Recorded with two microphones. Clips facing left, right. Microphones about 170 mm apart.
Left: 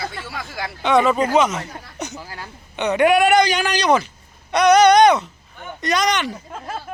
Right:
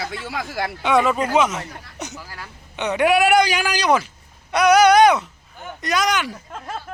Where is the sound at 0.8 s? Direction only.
5° right (ahead or behind).